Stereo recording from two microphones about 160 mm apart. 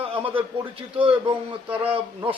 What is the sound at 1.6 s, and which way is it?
Speech, 10° right (ahead or behind).